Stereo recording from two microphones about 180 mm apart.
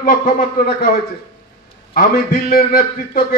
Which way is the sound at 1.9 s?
50° left (ahead or behind).